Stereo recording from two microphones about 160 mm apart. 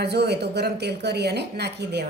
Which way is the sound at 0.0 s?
90° right.